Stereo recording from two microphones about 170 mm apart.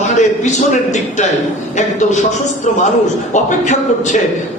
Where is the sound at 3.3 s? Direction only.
45° left (ahead or behind).